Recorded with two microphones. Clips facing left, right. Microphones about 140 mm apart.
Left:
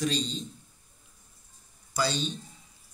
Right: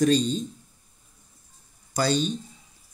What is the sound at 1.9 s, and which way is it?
Speech, 45° right (ahead or behind).